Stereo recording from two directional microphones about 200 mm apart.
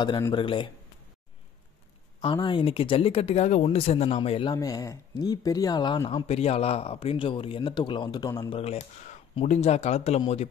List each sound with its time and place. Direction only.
0.0 s speech: 20° left (ahead or behind)
2.2 s speech: 25° left (ahead or behind)